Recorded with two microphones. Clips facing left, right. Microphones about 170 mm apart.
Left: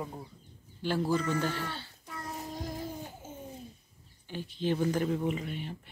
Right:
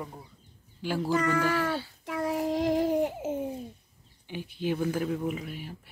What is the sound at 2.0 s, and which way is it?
Child singing, 90° right.